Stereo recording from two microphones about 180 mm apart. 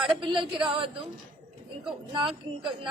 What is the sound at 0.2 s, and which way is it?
Speech, 30° right (ahead or behind).